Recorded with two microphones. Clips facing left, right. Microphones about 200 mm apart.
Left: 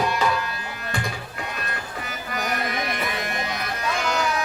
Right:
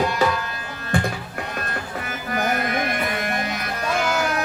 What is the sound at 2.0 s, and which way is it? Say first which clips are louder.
Music: right 5 dB; 50° right (ahead or behind).